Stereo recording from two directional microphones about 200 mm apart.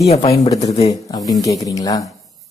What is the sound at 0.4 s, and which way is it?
A man's voice, 20° left (ahead or behind).